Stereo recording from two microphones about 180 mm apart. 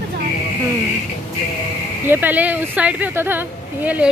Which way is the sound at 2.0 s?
10° right (ahead or behind).